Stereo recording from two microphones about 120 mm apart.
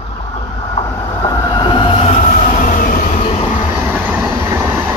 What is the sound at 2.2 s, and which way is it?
Train, 85° left.